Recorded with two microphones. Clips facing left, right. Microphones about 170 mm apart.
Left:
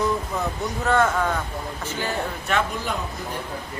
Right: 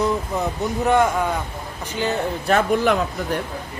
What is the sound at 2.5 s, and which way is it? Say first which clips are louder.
Speech: right 5 dB; 35° right (ahead or behind).